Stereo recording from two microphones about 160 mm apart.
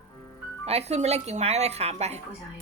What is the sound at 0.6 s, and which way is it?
Speech, 40° right (ahead or behind).